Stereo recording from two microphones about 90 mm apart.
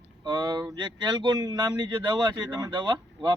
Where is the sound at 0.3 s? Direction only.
50° right (ahead or behind).